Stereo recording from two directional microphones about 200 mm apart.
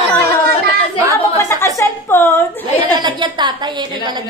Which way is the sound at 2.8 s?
20° right (ahead or behind).